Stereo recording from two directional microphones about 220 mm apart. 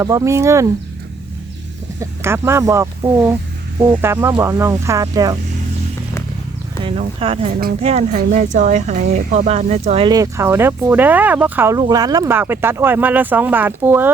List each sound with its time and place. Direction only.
0.0 s speech: 15° right (ahead or behind)
2.0 s speech: 10° right (ahead or behind)
7.0 s speech: 25° right (ahead or behind); by 14.1 s 10° right (ahead or behind)